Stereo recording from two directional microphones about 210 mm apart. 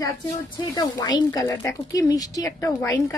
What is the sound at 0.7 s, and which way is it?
A woman's voice, 20° left (ahead or behind).